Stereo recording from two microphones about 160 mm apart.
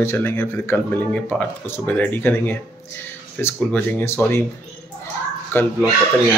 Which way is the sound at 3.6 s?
10° left (ahead or behind).